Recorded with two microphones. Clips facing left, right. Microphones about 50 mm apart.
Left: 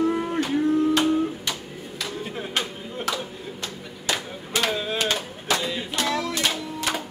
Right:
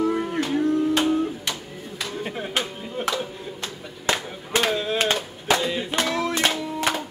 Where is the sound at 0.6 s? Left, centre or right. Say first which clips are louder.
Left 1 dB; centre.